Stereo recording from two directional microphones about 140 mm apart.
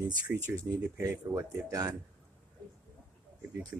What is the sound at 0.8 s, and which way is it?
Speech, 15° right (ahead or behind).